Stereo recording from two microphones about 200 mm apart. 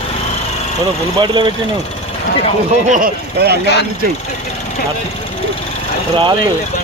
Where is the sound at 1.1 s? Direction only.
25° right (ahead or behind).